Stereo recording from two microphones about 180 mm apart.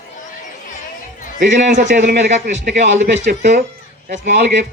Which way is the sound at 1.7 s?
45° right (ahead or behind).